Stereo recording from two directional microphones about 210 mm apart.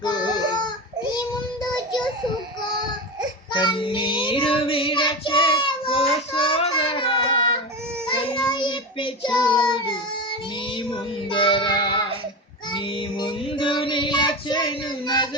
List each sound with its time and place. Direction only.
0.0 s baby cry: 20° left (ahead or behind)
3.5 s child singing: 20° left (ahead or behind)
9.6 s baby cry: 20° left (ahead or behind)
11.3 s child singing: 25° left (ahead or behind)